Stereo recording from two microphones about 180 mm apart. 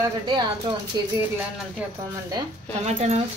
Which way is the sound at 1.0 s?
25° right (ahead or behind).